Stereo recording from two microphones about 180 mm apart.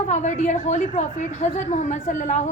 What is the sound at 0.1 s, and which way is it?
A woman's voice, 40° left (ahead or behind).